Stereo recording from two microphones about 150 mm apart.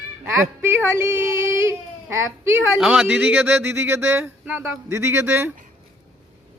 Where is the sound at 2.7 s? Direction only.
5° right (ahead or behind).